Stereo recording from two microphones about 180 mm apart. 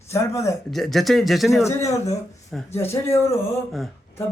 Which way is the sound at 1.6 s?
15° left (ahead or behind).